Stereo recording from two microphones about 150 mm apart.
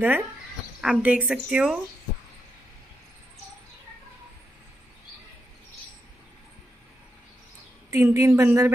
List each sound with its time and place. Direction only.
0.0 s a woman's voice: 10° right (ahead or behind)
7.9 s speech: 15° right (ahead or behind)